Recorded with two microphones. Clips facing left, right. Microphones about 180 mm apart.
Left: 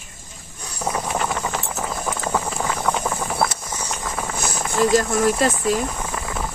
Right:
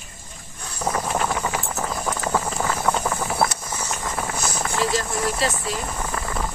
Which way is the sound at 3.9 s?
Centre (ahead or behind).